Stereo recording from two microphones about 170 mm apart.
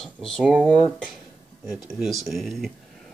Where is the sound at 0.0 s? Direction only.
5° left (ahead or behind).